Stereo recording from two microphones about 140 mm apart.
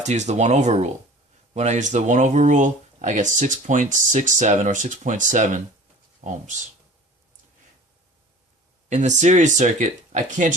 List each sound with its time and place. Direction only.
0.0 s speech: 55° right (ahead or behind)
8.9 s speech: 60° right (ahead or behind)